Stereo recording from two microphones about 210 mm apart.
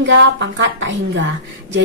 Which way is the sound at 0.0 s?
60° right (ahead or behind).